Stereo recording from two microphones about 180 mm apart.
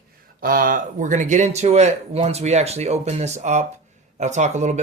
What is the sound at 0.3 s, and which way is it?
Speech, 50° right (ahead or behind).